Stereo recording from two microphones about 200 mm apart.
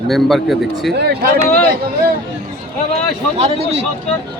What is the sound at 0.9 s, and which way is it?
Speech, 55° right (ahead or behind).